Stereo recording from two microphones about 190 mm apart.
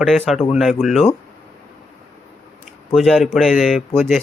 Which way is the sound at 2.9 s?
Centre (ahead or behind).